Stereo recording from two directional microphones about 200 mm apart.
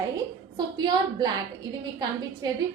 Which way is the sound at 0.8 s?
20° right (ahead or behind).